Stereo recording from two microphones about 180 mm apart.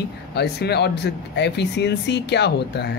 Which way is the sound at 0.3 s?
65° left (ahead or behind).